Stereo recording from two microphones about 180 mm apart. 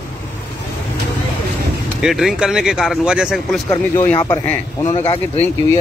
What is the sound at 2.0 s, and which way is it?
Speech, centre (ahead or behind).